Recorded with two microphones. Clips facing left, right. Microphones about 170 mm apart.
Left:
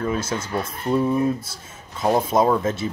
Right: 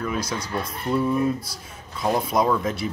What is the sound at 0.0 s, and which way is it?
Speech, 30° left (ahead or behind).